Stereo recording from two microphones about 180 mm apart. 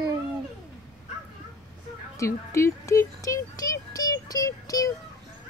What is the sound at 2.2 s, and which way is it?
Speech, 15° left (ahead or behind).